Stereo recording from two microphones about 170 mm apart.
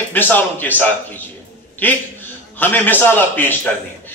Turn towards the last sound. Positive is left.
turn(degrees=10)  # may be behind; listen again after turning